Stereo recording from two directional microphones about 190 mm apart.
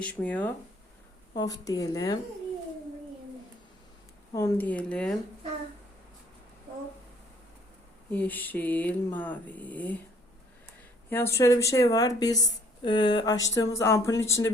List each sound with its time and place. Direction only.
0.0 s speech: 5° left (ahead or behind)
1.3 s speech: 20° left (ahead or behind)
4.4 s speech: 15° left (ahead or behind)
8.1 s speech: 10° left (ahead or behind)
11.1 s speech: 15° left (ahead or behind)